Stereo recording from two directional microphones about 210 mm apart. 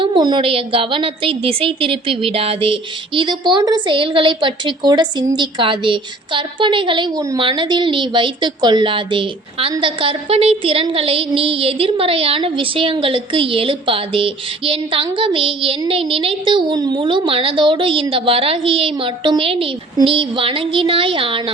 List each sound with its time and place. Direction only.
0.0 s a woman's voice: 20° right (ahead or behind)